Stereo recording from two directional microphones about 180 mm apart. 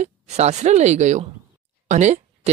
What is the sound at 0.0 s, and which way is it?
Speech, 40° right (ahead or behind).